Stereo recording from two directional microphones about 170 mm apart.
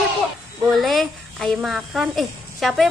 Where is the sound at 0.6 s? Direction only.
Centre (ahead or behind).